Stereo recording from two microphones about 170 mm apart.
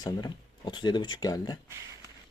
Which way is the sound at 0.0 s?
25° left (ahead or behind).